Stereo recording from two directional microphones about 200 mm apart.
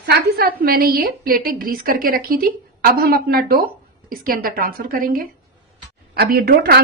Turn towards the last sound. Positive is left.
turn(degrees=-50)  # may be behind; listen again after turning